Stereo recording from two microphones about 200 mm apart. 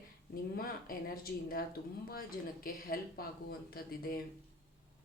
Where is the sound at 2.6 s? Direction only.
50° left (ahead or behind).